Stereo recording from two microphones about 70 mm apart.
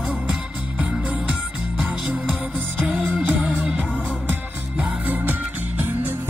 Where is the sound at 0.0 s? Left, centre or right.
Centre.